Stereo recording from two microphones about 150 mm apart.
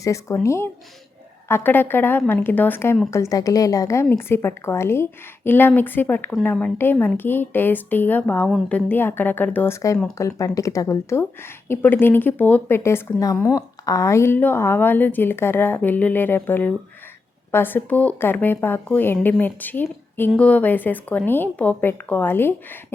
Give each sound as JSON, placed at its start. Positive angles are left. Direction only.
{"t": 0.0, "sound": "a woman's voice", "side_deg": 20}